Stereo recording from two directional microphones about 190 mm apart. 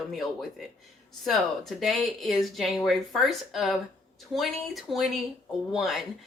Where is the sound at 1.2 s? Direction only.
Centre (ahead or behind).